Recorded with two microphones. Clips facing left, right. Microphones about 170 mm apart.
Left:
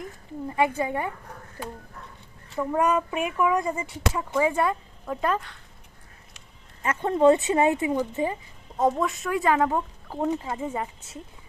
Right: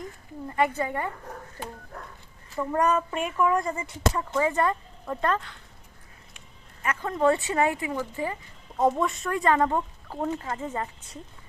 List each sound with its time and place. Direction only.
0.4 s speech: 15° left (ahead or behind)
2.6 s speech: 10° left (ahead or behind)
6.8 s a woman's voice: 25° left (ahead or behind)
8.8 s speech: centre (ahead or behind)